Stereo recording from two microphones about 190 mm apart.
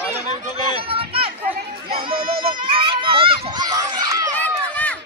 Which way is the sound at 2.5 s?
25° right (ahead or behind).